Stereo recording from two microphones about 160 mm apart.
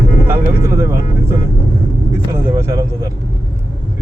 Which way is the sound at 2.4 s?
15° right (ahead or behind).